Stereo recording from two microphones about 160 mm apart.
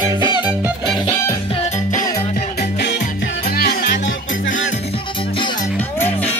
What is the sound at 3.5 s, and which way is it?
Music, 80° left.